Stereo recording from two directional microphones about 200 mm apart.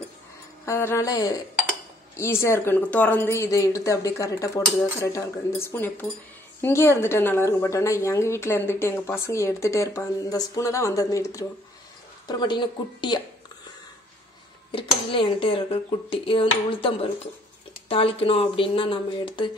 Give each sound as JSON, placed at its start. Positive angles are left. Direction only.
{"t": 0.7, "sound": "a woman's voice", "side_deg": 15}
{"t": 14.7, "sound": "speech", "side_deg": 25}